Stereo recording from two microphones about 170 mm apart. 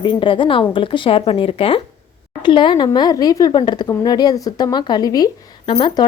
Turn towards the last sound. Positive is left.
turn(degrees=30)  # may be behind; listen again after turning